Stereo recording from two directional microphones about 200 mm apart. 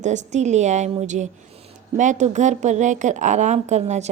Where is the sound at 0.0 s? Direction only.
35° right (ahead or behind).